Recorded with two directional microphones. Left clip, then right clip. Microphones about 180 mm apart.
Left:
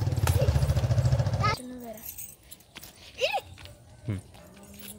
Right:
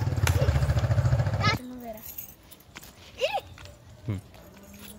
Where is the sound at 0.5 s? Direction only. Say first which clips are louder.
Right 1 dB; 10° left (ahead or behind).